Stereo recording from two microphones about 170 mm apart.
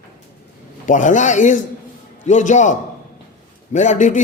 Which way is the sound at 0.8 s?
50° left (ahead or behind).